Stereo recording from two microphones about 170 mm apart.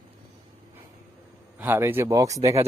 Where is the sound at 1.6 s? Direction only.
10° right (ahead or behind).